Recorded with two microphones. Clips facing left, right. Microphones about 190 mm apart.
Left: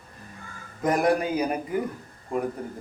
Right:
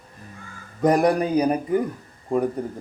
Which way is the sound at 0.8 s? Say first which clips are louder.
Right 4 dB; 35° right (ahead or behind).